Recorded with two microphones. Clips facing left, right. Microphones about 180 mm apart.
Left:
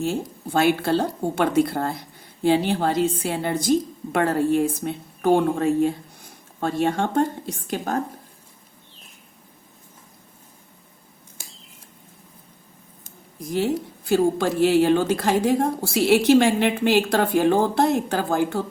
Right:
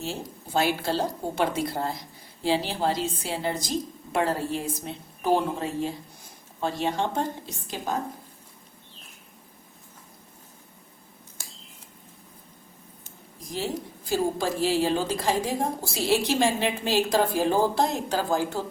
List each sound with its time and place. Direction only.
0.0 s speech: 55° left (ahead or behind)
13.5 s speech: 60° left (ahead or behind)